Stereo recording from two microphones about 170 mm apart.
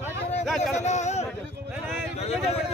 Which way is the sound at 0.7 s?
45° left (ahead or behind).